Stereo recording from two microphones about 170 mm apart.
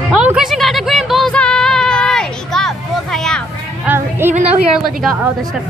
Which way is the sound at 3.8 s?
15° right (ahead or behind).